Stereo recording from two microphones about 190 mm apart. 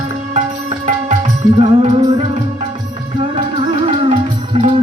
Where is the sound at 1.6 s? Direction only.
30° right (ahead or behind).